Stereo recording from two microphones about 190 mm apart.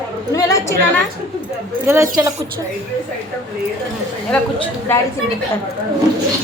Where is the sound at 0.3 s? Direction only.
15° left (ahead or behind).